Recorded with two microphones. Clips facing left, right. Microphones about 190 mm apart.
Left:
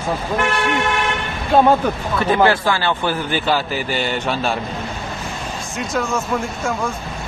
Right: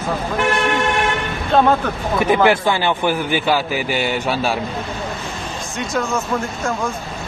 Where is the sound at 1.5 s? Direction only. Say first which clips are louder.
Left 1 dB; 10° left (ahead or behind).